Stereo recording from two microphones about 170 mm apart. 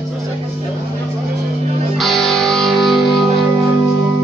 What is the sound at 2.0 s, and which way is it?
Music, centre (ahead or behind).